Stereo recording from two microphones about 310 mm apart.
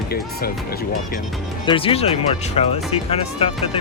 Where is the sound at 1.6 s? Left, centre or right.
Centre.